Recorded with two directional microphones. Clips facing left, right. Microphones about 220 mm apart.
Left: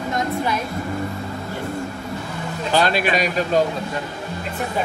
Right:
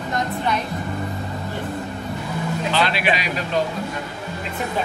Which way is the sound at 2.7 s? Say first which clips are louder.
Left 4 dB; 45° left (ahead or behind).